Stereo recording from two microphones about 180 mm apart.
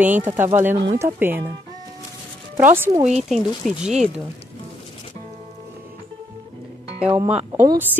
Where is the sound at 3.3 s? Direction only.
Centre (ahead or behind).